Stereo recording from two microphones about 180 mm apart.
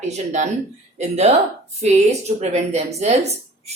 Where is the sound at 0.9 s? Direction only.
40° right (ahead or behind).